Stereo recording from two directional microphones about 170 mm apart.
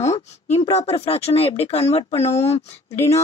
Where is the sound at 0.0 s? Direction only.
40° left (ahead or behind).